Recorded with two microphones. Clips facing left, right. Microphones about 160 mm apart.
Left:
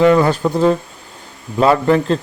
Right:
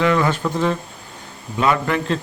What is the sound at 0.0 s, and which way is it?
Speech, 35° left (ahead or behind).